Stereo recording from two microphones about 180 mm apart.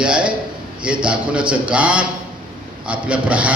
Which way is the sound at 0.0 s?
5° right (ahead or behind).